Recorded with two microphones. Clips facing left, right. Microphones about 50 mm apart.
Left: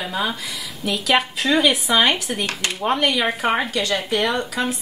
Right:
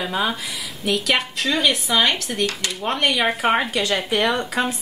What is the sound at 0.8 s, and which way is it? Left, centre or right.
Speech, centre.